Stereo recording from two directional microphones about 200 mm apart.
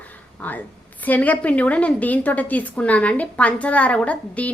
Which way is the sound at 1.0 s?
10° left (ahead or behind).